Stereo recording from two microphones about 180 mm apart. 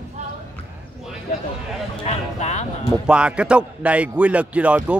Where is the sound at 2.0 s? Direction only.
40° left (ahead or behind).